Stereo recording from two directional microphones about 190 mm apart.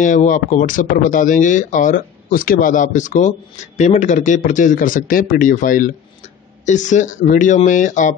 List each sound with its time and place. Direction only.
0.0 s speech: 40° left (ahead or behind)